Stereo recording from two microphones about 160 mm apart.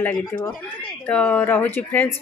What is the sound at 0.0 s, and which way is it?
Speech, 10° left (ahead or behind).